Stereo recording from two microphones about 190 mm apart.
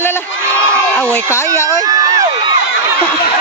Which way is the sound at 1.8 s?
20° right (ahead or behind).